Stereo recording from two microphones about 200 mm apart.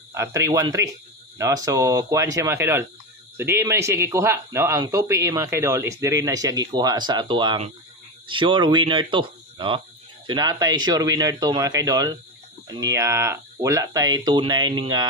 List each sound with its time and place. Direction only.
0.1 s speech: 15° right (ahead or behind)